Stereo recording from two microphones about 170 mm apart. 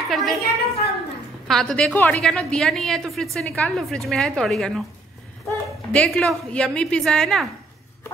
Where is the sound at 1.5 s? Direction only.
Centre (ahead or behind).